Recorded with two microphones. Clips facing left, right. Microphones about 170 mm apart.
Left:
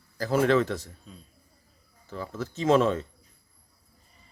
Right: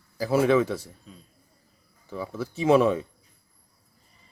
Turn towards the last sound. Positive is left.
turn(degrees=-10)  # may be behind; listen again after turning